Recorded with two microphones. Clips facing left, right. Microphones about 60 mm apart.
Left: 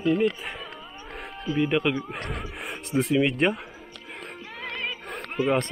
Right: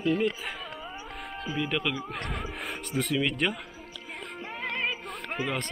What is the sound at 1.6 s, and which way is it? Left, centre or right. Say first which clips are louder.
Speech: left 7 dB; centre.